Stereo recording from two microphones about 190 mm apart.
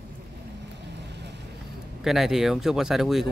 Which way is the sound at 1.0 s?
65° right (ahead or behind).